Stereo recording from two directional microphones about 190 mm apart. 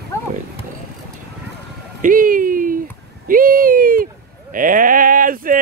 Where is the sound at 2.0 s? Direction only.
45° right (ahead or behind).